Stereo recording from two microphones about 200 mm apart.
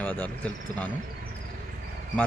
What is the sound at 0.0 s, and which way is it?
Speech, 10° left (ahead or behind).